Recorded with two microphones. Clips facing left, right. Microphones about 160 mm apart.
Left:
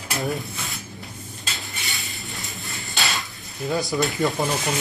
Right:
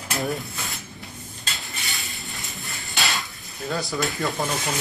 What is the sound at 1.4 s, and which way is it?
Dishes, centre (ahead or behind).